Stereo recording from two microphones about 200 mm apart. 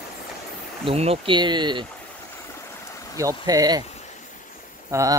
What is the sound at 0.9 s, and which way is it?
Speech, 30° right (ahead or behind).